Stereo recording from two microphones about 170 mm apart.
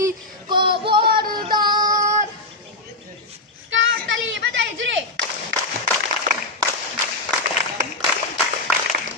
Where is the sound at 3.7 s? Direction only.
90° right.